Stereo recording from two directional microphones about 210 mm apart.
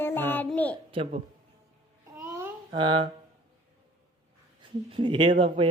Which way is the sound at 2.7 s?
20° right (ahead or behind).